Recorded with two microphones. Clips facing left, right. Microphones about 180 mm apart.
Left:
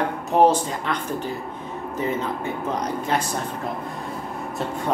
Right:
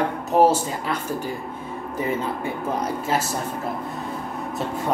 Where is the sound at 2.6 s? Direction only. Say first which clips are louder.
Right 1 dB; 10° right (ahead or behind).